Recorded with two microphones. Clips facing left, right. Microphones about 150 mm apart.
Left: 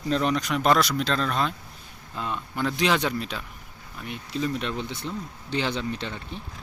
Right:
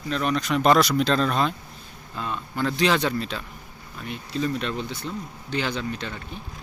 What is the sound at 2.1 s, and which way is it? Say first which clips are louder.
Speech: right 1 dB; 15° left (ahead or behind).